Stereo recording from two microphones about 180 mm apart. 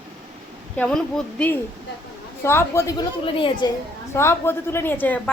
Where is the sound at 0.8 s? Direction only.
5° left (ahead or behind).